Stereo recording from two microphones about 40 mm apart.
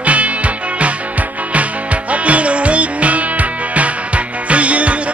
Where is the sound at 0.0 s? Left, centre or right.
Right.